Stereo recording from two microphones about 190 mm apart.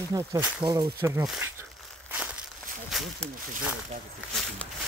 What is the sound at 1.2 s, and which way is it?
Speech, centre (ahead or behind).